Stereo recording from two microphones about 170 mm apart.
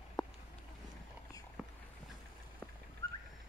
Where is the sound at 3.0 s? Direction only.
20° left (ahead or behind).